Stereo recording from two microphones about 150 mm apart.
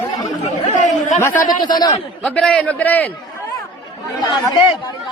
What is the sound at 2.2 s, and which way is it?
Speech, 5° left (ahead or behind).